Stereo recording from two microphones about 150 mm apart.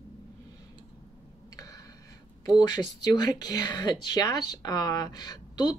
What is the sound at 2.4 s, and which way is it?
Speech, 25° left (ahead or behind).